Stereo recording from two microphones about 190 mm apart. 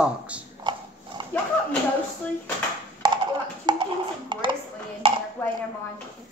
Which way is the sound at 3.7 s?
25° right (ahead or behind).